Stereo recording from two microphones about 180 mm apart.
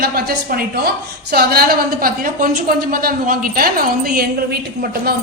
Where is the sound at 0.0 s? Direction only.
55° right (ahead or behind).